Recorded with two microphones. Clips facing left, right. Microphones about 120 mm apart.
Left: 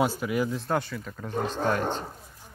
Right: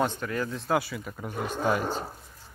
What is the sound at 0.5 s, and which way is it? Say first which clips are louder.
Speech: right 1 dB; centre (ahead or behind).